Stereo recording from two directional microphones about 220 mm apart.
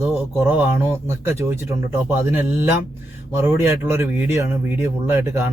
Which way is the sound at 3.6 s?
10° right (ahead or behind).